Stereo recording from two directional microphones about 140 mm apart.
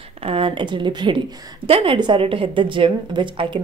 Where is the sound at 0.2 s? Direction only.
40° right (ahead or behind).